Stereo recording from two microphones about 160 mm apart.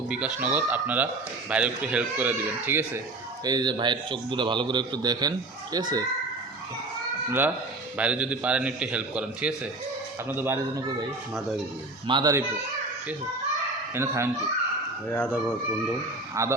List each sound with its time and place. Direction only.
0.1 s a man's voice: 5° right (ahead or behind)
3.4 s a man's voice: 25° right (ahead or behind)
7.3 s a man's voice: 10° right (ahead or behind)
12.0 s a man's voice: 30° right (ahead or behind)
13.9 s a man's voice: 15° right (ahead or behind)
15.1 s speech: 10° left (ahead or behind)
16.3 s a man's voice: 20° right (ahead or behind)